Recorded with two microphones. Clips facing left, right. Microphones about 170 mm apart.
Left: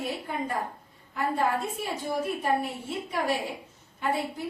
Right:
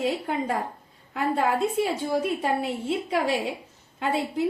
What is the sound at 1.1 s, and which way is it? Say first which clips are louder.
A woman's voice: right 3 dB; 90° right.